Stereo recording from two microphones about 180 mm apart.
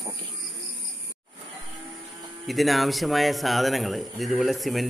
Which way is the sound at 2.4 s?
Centre (ahead or behind).